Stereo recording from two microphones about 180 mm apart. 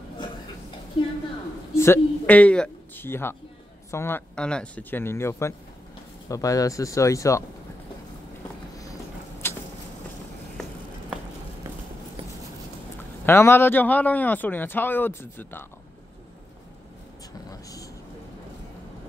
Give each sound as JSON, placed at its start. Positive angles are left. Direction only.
{"t": 1.8, "sound": "a man's voice", "side_deg": 10}
{"t": 9.4, "sound": "vehicle", "side_deg": 15}
{"t": 13.2, "sound": "a man's voice", "side_deg": 15}
{"t": 17.5, "sound": "speech", "side_deg": 20}